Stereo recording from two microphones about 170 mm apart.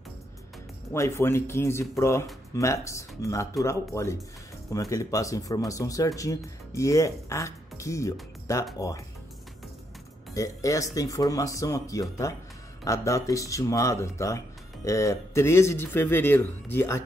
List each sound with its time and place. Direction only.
0.9 s speech: 15° left (ahead or behind)
10.3 s speech: 20° left (ahead or behind)